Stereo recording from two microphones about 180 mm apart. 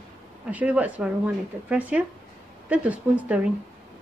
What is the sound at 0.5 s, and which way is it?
Speech, 5° right (ahead or behind).